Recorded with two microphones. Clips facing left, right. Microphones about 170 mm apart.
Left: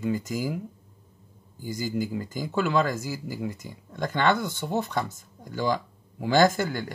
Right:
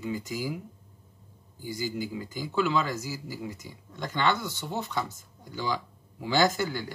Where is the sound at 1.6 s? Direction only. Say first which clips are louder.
Left 3 dB; 50° left (ahead or behind).